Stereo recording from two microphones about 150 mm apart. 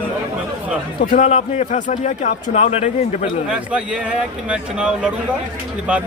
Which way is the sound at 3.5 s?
10° right (ahead or behind).